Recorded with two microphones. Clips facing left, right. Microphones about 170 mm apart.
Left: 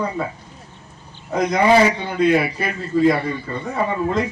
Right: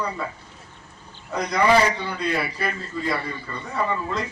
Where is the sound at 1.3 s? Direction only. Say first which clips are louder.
Left 5 dB; 45° left (ahead or behind).